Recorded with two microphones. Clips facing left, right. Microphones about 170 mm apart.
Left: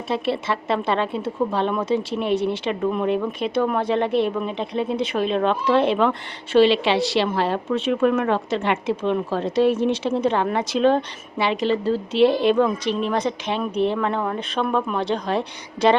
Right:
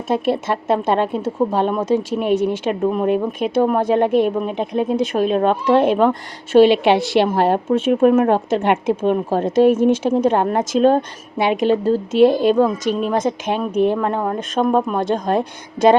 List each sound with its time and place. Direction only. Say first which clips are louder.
0.1 s speech: right 5 dB; 50° right (ahead or behind)